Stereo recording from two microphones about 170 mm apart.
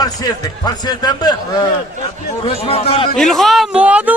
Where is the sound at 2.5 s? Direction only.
35° left (ahead or behind).